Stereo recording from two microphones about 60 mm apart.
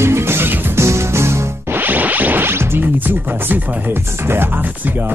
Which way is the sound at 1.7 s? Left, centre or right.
Right.